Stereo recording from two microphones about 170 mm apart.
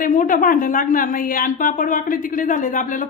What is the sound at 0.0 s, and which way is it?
A woman's voice, 50° left (ahead or behind).